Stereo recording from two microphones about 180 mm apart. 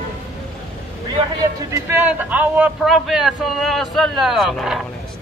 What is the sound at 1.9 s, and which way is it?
Speech, 10° right (ahead or behind).